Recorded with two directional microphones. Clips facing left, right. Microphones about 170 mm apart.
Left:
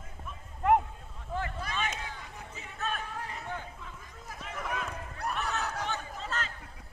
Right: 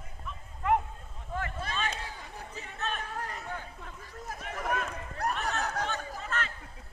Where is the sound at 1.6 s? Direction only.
30° right (ahead or behind).